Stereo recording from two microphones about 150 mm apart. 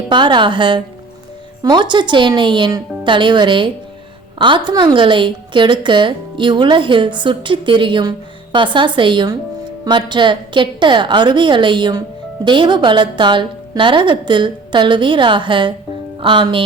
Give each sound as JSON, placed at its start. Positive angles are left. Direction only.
{"t": 0.1, "sound": "a woman's voice", "side_deg": -30}